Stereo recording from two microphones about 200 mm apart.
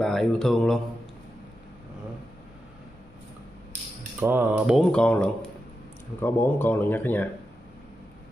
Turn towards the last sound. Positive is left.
turn(degrees=10)  # may be behind; listen again after turning